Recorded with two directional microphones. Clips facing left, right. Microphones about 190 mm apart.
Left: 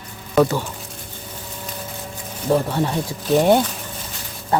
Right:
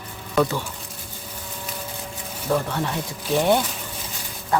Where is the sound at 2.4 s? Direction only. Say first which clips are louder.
Left 5 dB; 30° left (ahead or behind).